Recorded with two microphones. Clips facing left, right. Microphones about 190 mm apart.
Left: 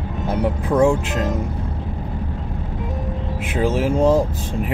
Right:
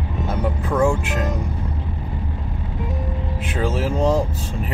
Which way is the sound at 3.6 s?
10° left (ahead or behind).